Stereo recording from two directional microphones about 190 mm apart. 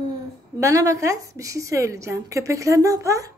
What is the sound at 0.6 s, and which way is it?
A woman's voice, 15° right (ahead or behind).